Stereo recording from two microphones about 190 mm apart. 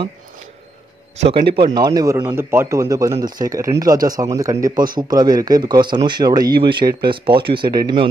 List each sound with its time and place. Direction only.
1.1 s a man's voice: 35° right (ahead or behind)
1.5 s a man's voice: 25° right (ahead or behind)